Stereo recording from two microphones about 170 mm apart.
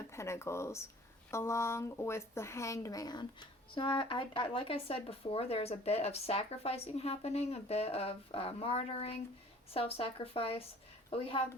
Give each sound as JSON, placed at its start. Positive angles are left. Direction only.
{"t": 0.1, "sound": "a woman's voice", "side_deg": 15}